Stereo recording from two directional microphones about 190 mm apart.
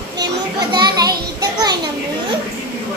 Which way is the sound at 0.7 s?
20° right (ahead or behind).